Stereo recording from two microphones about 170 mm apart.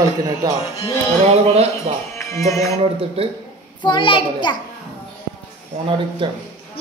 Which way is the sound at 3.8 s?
30° left (ahead or behind).